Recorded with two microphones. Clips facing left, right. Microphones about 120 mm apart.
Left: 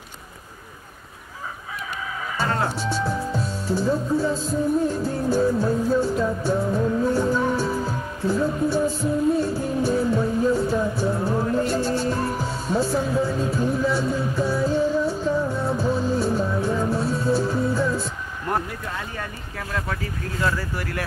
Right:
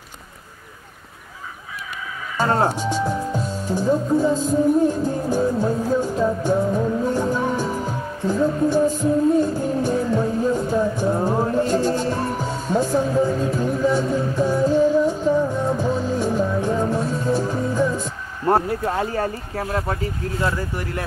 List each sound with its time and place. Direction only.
2.3 s speech: 40° right (ahead or behind)
2.7 s speech: 15° right (ahead or behind)
4.8 s music: 15° right (ahead or behind)
12.4 s music: 15° right (ahead or behind)
18.5 s speech: 40° right (ahead or behind); by 21.0 s 25° right (ahead or behind)